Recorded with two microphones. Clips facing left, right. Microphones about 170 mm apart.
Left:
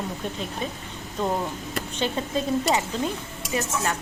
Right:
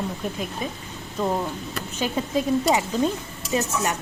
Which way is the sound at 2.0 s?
15° right (ahead or behind).